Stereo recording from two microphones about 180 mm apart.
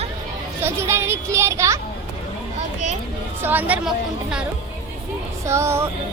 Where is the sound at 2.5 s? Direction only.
40° right (ahead or behind).